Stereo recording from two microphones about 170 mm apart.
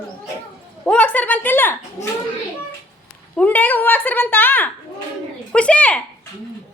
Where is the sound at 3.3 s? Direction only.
10° left (ahead or behind).